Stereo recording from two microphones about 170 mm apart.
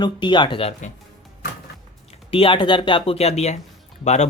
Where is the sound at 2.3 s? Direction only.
30° left (ahead or behind).